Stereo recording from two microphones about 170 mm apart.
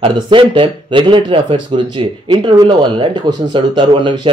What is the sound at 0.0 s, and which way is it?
Speech, 30° right (ahead or behind).